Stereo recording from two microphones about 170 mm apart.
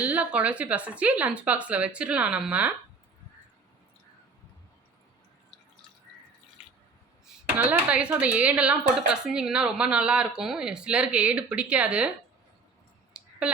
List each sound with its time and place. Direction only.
0.0 s a woman's voice: 10° right (ahead or behind)
7.6 s a woman's voice: 5° right (ahead or behind)
13.2 s clicking: 5° right (ahead or behind)